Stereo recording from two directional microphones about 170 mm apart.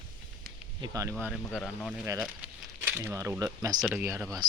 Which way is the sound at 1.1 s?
5° left (ahead or behind).